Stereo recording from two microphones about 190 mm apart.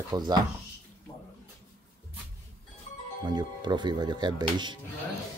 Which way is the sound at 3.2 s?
20° right (ahead or behind).